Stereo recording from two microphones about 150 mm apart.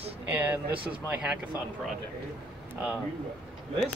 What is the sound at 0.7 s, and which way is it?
Speech, 35° right (ahead or behind).